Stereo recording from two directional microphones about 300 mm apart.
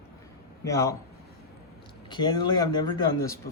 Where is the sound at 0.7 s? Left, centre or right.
Centre.